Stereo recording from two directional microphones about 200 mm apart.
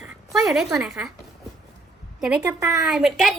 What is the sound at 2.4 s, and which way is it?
Speech, 15° right (ahead or behind).